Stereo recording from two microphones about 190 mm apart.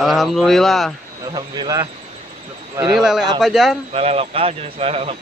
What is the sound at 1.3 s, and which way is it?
Speech, 20° right (ahead or behind).